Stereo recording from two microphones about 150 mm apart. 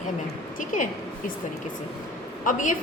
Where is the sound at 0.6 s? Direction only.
60° left (ahead or behind).